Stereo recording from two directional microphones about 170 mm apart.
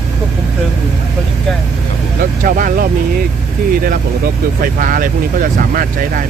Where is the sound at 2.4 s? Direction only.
55° right (ahead or behind).